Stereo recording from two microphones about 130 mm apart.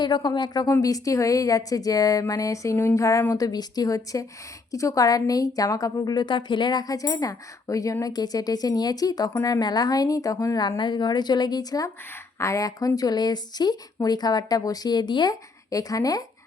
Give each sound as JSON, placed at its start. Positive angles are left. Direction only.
{"t": 0.0, "sound": "a woman's voice", "side_deg": 35}